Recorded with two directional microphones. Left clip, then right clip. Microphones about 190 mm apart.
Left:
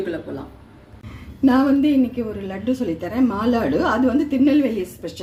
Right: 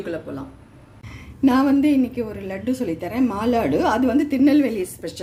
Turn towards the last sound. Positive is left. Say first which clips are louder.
# even
turn(degrees=-20)  # may be behind; listen again after turning